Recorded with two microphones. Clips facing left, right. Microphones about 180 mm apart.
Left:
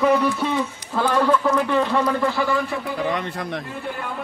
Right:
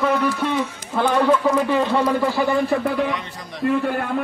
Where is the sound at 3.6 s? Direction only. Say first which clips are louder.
Right 11 dB; 75° right (ahead or behind).